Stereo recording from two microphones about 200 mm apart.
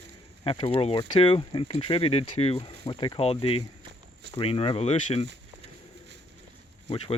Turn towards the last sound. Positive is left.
turn(degrees=25)  # may be behind; listen again after turning